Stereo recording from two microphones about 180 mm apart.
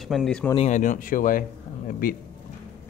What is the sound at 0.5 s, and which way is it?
A man's voice, 40° left (ahead or behind).